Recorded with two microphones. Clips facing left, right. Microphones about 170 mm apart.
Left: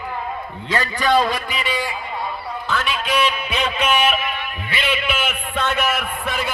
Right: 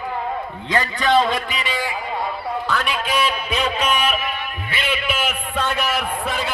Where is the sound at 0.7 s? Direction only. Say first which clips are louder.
Even; 20° right (ahead or behind).